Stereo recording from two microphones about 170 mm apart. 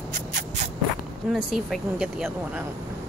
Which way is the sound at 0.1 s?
50° right (ahead or behind).